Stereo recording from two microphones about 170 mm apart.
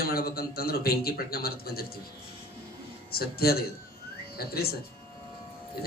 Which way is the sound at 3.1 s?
65° left (ahead or behind).